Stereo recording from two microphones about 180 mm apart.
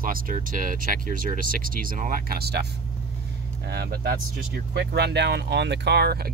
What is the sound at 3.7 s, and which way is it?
Speech, 60° right (ahead or behind).